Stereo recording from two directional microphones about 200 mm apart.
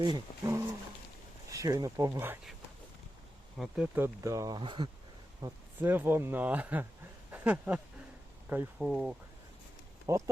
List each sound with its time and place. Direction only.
0.0 s speech: 20° right (ahead or behind)
3.6 s speech: 10° right (ahead or behind); by 4.9 s 25° right (ahead or behind)
5.4 s speech: 10° right (ahead or behind)
7.3 s a sound: 5° right (ahead or behind)
8.4 s speech: 5° right (ahead or behind)
10.1 s speech: 15° right (ahead or behind)